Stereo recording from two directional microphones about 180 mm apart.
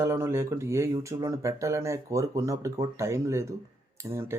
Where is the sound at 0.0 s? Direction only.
15° right (ahead or behind).